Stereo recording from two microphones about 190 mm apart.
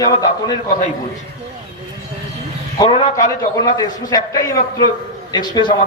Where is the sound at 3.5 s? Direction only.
20° left (ahead or behind).